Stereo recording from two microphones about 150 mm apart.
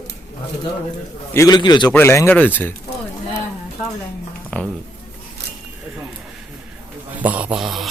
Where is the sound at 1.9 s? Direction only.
15° left (ahead or behind).